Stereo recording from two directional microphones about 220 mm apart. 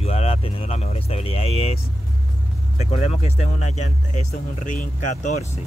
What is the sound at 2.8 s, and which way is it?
Speech, 25° left (ahead or behind).